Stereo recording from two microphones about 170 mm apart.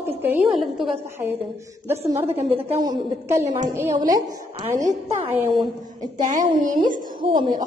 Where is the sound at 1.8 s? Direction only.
15° right (ahead or behind).